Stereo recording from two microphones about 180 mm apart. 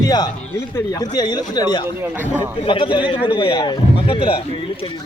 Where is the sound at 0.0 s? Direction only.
20° left (ahead or behind).